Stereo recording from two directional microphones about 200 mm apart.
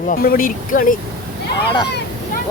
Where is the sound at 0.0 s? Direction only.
45° left (ahead or behind).